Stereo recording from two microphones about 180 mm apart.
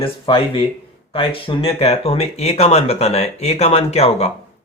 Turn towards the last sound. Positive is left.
turn(degrees=35)  # may be behind; listen again after turning